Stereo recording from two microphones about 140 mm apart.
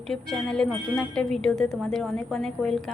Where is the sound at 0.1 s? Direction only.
5° left (ahead or behind).